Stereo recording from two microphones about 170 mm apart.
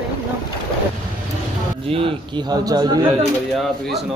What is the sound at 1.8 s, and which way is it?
A man's voice, 30° right (ahead or behind).